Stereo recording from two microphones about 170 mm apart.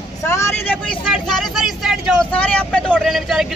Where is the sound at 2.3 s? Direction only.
10° left (ahead or behind).